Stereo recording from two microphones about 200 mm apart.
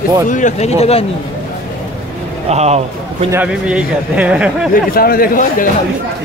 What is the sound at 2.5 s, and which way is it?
Speech, 35° right (ahead or behind).